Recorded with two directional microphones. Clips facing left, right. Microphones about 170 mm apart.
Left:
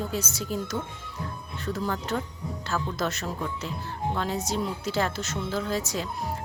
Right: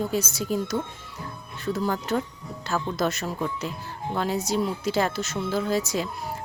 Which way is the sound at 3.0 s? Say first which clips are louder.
Right 3 dB; 10° right (ahead or behind).